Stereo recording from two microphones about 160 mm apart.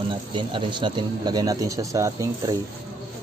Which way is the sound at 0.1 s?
30° right (ahead or behind).